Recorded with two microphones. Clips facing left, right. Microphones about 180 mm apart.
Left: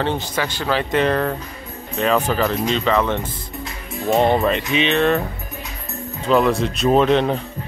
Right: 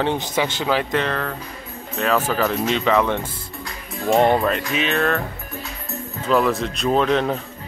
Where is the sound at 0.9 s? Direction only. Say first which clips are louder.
Left 4 dB; 15° left (ahead or behind).